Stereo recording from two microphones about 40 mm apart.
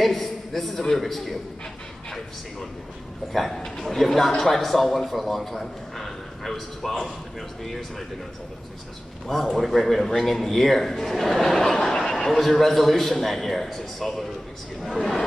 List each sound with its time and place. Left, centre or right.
0.0 s a sound: centre
1.0 s a man's voice: centre
3.3 s a man's voice: centre
9.6 s a man's voice: centre